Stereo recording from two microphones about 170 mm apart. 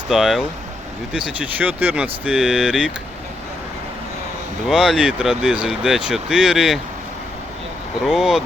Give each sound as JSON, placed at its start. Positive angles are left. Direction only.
{"t": 0.1, "sound": "speech", "side_deg": 0}
{"t": 4.7, "sound": "speech", "side_deg": -5}
{"t": 8.0, "sound": "speech", "side_deg": 0}